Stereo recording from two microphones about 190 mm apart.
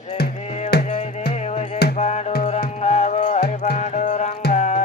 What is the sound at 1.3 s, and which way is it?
Music, 35° left (ahead or behind).